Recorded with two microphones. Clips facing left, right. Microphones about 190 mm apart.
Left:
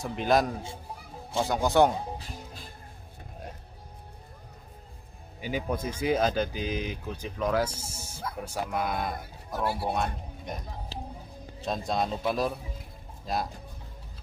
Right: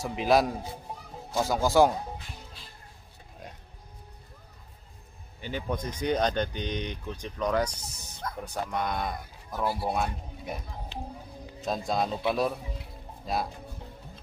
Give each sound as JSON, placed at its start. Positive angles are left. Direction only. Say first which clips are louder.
{"t": 0.0, "sound": "speech", "louder": "right 1 dB", "side_deg": 0}
{"t": 2.1, "sound": "music", "louder": "left 4 dB", "side_deg": 40}
{"t": 5.4, "sound": "speech", "louder": "left 2 dB", "side_deg": 10}
{"t": 10.9, "sound": "speech", "louder": "right 2 dB", "side_deg": 40}
{"t": 11.6, "sound": "speech", "louder": "right 1 dB", "side_deg": 0}